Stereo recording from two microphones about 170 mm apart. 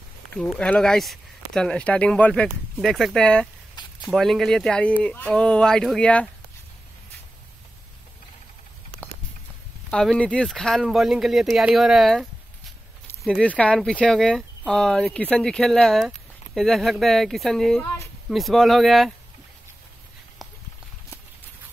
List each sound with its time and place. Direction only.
0.3 s speech: 5° left (ahead or behind)
9.8 s speech: 5° left (ahead or behind)